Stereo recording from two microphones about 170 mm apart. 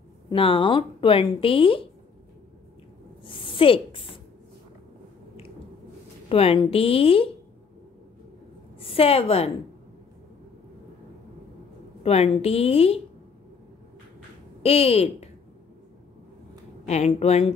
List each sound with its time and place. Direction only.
0.3 s speech: 30° left (ahead or behind)
3.3 s a woman's voice: 30° left (ahead or behind)
6.2 s speech: 35° left (ahead or behind)
8.7 s a woman's voice: 35° left (ahead or behind)
12.0 s speech: 35° left (ahead or behind)
14.6 s speech: 35° left (ahead or behind)
16.8 s speech: 40° left (ahead or behind)